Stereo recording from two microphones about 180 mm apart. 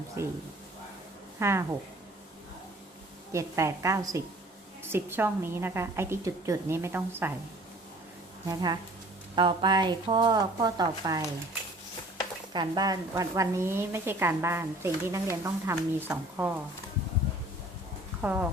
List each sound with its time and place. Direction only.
0.2 s a woman's voice: 15° right (ahead or behind)
1.4 s a woman's voice: 15° right (ahead or behind)
3.3 s a woman's voice: 15° right (ahead or behind)
8.4 s speech: 25° right (ahead or behind)
12.5 s a woman's voice: 25° right (ahead or behind)
18.2 s speech: 10° right (ahead or behind)